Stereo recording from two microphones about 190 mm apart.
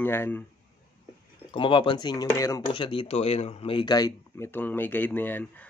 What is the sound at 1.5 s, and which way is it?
Speech, 25° left (ahead or behind).